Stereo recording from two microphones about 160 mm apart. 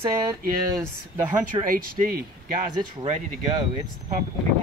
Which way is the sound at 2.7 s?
35° right (ahead or behind).